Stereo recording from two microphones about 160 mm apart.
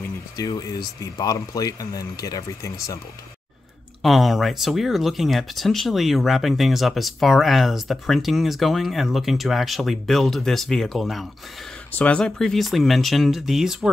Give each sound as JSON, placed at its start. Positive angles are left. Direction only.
{"t": 0.4, "sound": "speech", "side_deg": 25}
{"t": 4.0, "sound": "speech", "side_deg": 0}